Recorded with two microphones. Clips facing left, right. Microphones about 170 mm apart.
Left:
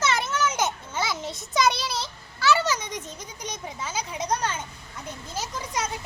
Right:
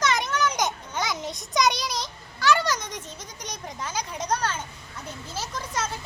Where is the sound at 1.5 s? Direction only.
Centre (ahead or behind).